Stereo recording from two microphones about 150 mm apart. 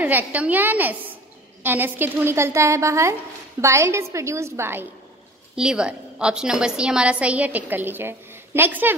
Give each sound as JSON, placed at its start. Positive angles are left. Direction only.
{"t": 0.0, "sound": "a woman's voice", "side_deg": -10}
{"t": 5.6, "sound": "a woman's voice", "side_deg": -5}